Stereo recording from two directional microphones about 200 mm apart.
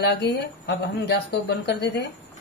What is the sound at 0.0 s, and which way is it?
Speech, 55° left (ahead or behind).